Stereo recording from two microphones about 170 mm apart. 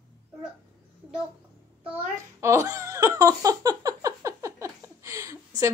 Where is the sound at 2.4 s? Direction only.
15° right (ahead or behind).